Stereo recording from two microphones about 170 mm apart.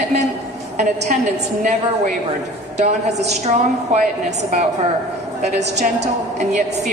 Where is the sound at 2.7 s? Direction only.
40° right (ahead or behind).